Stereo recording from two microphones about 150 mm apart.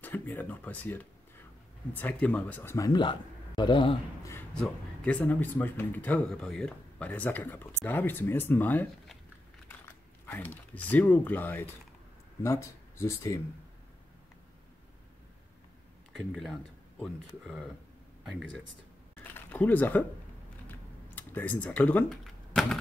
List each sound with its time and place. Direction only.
0.0 s speech: 10° left (ahead or behind); by 4.0 s 35° left (ahead or behind)
4.2 s a sound: 20° left (ahead or behind)
4.6 s speech: 10° left (ahead or behind)
10.2 s speech: 15° left (ahead or behind)
17.0 s speech: 5° left (ahead or behind)
20.6 s typing: 15° left (ahead or behind)